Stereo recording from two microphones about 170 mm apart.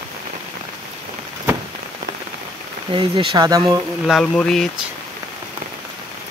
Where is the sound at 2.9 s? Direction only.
30° right (ahead or behind).